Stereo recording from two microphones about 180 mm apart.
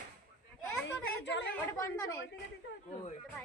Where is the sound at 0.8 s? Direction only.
75° left (ahead or behind).